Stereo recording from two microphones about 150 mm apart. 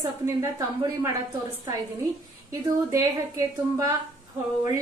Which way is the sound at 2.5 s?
20° right (ahead or behind).